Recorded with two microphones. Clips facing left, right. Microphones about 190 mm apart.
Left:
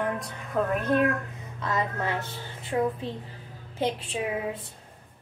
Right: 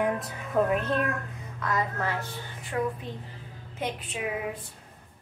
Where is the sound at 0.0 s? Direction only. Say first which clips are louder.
Right 2 dB; 10° right (ahead or behind).